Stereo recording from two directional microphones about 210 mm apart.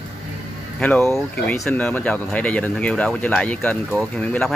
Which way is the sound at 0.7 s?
5° left (ahead or behind).